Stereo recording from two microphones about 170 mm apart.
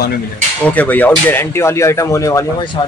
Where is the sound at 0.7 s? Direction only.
10° left (ahead or behind).